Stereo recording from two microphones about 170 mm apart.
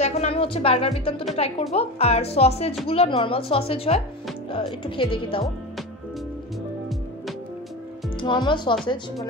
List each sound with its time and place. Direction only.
0.0 s speech: 35° left (ahead or behind)
8.5 s speech: 30° left (ahead or behind)